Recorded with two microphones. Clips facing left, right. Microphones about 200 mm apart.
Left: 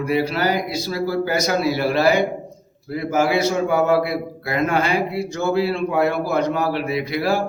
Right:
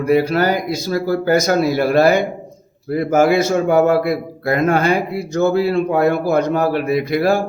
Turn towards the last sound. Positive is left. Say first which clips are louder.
# right 5 dB
turn(degrees=-50)  # may be behind; listen again after turning